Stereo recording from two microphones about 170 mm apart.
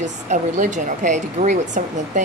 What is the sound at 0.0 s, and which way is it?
A woman's voice, 45° right (ahead or behind).